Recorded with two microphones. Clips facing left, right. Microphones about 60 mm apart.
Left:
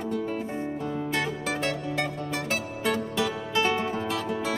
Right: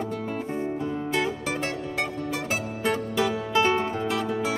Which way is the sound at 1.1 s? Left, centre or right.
Centre.